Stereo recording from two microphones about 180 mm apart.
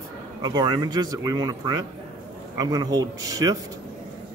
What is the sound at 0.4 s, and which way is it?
Speech, 25° right (ahead or behind).